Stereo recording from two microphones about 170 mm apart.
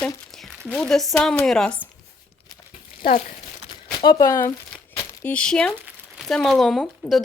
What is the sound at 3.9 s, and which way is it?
Speech, 25° left (ahead or behind).